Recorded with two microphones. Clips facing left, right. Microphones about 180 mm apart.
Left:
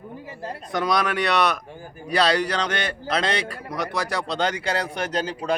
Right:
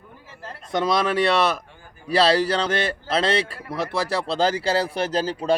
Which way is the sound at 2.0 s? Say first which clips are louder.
Right 3 dB; 30° right (ahead or behind).